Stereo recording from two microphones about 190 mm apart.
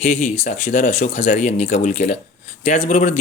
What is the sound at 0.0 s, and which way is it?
Speech, 35° left (ahead or behind).